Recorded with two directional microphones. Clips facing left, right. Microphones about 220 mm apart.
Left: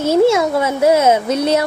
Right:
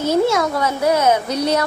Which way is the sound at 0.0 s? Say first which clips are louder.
Left 4 dB; 25° left (ahead or behind).